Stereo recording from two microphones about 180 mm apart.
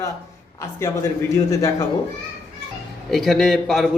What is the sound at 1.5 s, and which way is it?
Speech, 15° left (ahead or behind).